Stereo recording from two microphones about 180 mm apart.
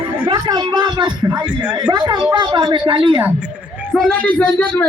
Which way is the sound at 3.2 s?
10° right (ahead or behind).